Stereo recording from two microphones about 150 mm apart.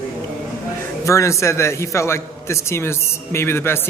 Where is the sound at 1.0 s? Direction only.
20° left (ahead or behind).